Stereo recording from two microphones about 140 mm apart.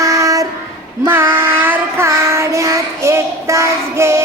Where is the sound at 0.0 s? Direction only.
25° right (ahead or behind).